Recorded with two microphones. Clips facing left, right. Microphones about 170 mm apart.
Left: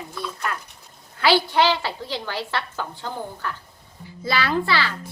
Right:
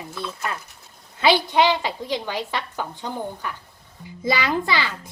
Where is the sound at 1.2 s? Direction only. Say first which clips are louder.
Right 1 dB; 20° right (ahead or behind).